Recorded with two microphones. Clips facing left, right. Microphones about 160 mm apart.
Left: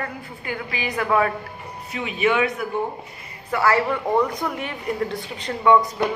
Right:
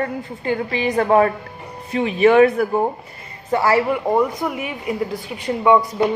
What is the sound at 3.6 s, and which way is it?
Speech, 15° right (ahead or behind).